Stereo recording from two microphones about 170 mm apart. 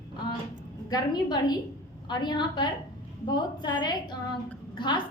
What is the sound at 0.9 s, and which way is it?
A woman's voice, 25° left (ahead or behind).